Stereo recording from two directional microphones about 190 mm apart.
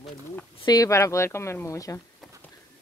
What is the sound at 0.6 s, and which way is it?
Speech, 20° left (ahead or behind).